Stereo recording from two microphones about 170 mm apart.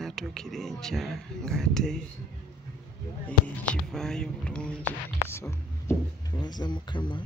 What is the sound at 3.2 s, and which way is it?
Speech, 5° left (ahead or behind).